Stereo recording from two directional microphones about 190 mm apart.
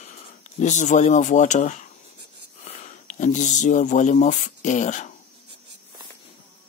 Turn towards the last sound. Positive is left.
turn(degrees=40)  # may be behind; listen again after turning